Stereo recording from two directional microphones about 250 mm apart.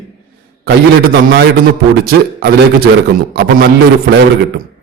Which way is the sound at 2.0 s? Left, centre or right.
Right.